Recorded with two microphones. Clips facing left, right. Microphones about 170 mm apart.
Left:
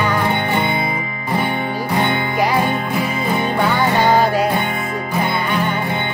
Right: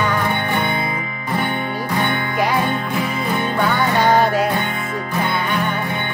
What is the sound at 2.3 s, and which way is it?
Music, 5° left (ahead or behind).